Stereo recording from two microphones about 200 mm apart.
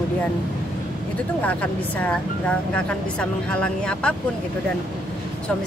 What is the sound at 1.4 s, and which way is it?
Speech, 5° left (ahead or behind).